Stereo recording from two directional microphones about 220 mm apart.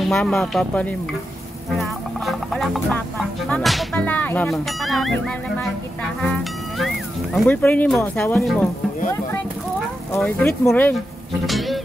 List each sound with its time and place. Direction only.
0.0 s speech: centre (ahead or behind)
7.3 s speech: 5° left (ahead or behind)
10.1 s speech: 10° left (ahead or behind)
11.4 s music: centre (ahead or behind)